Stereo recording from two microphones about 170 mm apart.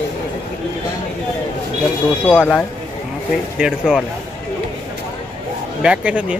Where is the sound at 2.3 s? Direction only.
10° left (ahead or behind).